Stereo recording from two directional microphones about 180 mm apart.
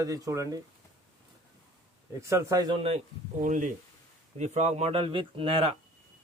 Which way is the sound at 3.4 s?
45° right (ahead or behind).